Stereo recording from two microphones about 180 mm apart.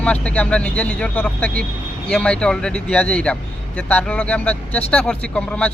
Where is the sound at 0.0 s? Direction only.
5° left (ahead or behind).